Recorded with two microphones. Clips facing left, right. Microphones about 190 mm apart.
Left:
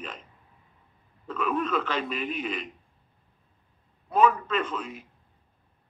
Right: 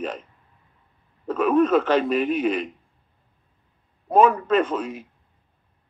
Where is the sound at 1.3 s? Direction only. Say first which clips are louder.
Right 10 dB; 45° right (ahead or behind).